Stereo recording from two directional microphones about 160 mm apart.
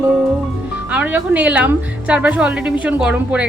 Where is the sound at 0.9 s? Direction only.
10° right (ahead or behind).